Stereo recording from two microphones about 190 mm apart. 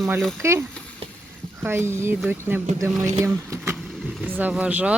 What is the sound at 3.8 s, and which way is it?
Vehicle, centre (ahead or behind).